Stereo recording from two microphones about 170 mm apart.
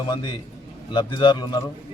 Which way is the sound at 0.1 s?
25° left (ahead or behind).